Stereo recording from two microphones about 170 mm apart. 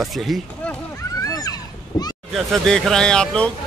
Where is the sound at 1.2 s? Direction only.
20° left (ahead or behind).